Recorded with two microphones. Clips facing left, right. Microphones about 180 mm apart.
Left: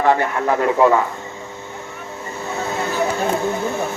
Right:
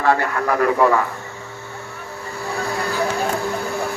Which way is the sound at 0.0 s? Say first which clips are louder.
Left 2 dB; 20° left (ahead or behind).